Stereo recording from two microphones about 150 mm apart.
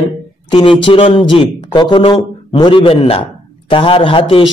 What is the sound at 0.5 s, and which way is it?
Speech, 35° left (ahead or behind).